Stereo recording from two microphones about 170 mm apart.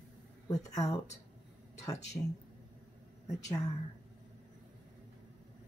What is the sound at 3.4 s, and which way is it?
Speech, 20° left (ahead or behind).